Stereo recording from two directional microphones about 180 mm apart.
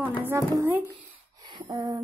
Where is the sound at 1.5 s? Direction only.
25° right (ahead or behind).